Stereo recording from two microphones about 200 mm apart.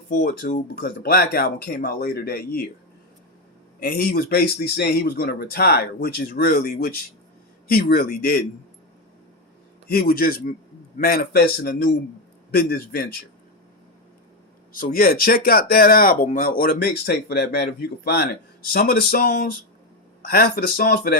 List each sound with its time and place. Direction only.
0.1 s speech: 45° left (ahead or behind)
3.8 s speech: 50° left (ahead or behind)
9.9 s speech: 50° left (ahead or behind)
14.7 s speech: 45° left (ahead or behind)